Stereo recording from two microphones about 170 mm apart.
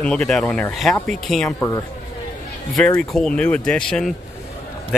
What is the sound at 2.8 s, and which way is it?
Speech, 5° left (ahead or behind).